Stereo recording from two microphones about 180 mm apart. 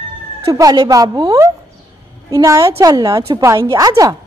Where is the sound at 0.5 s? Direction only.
20° right (ahead or behind).